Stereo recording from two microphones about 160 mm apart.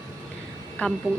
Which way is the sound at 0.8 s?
10° left (ahead or behind).